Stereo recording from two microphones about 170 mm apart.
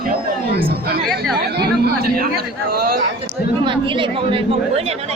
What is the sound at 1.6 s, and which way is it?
Chatter, 65° right (ahead or behind).